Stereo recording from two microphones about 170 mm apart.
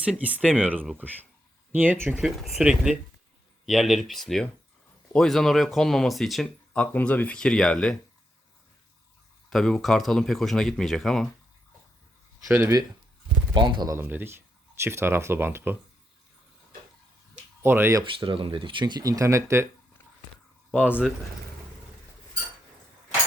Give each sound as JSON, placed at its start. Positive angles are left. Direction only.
{"t": 0.0, "sound": "speech", "side_deg": -5}
{"t": 9.5, "sound": "speech", "side_deg": 0}
{"t": 12.5, "sound": "speech", "side_deg": -15}
{"t": 13.5, "sound": "speech", "side_deg": -25}
{"t": 13.9, "sound": "speech", "side_deg": -10}
{"t": 17.6, "sound": "speech", "side_deg": -15}
{"t": 18.0, "sound": "speech", "side_deg": -30}